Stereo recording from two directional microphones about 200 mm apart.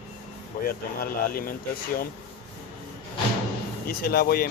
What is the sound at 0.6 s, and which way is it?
Speech, 45° left (ahead or behind).